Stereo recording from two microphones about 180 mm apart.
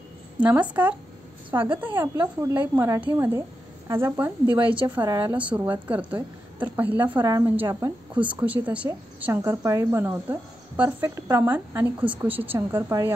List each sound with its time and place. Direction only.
0.4 s speech: 5° right (ahead or behind)
4.6 s a woman's voice: 30° right (ahead or behind)
5.7 s speech: 10° right (ahead or behind)